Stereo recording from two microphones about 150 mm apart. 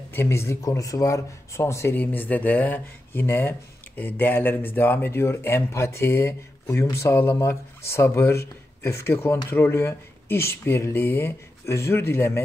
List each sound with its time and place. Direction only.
0.1 s speech: 15° left (ahead or behind)